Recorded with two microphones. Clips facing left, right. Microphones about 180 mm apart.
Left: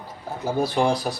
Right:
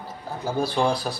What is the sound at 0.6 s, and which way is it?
Speech, 15° left (ahead or behind).